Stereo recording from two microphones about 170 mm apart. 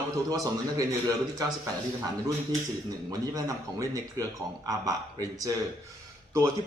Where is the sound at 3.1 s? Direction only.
20° right (ahead or behind).